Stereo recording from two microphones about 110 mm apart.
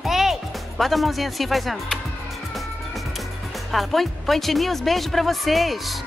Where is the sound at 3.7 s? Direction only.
Centre (ahead or behind).